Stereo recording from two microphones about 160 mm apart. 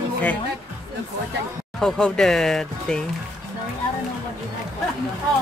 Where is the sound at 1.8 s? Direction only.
5° left (ahead or behind).